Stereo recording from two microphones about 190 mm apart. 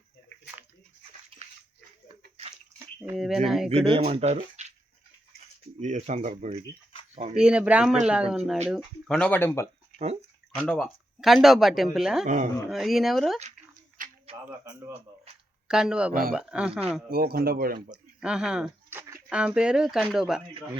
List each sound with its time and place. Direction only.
1.3 s bathtub: 30° right (ahead or behind)
3.0 s speech: 5° right (ahead or behind)
3.7 s speech: 30° right (ahead or behind)
5.8 s speech: 35° right (ahead or behind)
7.3 s speech: 5° right (ahead or behind)
12.2 s speech: 40° right (ahead or behind)
12.6 s speech: centre (ahead or behind)
14.0 s a sound: 45° right (ahead or behind)
15.6 s speech: 5° right (ahead or behind)
17.1 s speech: 55° right (ahead or behind)
17.9 s a sound: 5° right (ahead or behind)
19.3 s speech: 5° right (ahead or behind)